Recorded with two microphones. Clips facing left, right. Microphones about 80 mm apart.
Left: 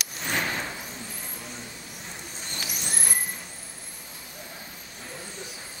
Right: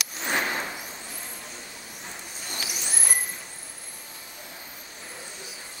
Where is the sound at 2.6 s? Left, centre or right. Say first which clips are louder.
Left 2 dB; centre.